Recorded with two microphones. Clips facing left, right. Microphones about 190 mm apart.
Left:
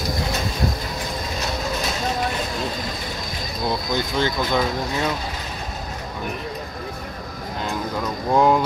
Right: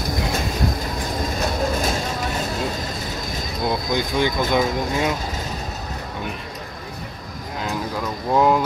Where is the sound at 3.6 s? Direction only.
20° right (ahead or behind).